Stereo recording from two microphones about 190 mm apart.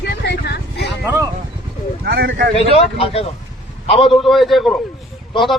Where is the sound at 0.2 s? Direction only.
60° left (ahead or behind).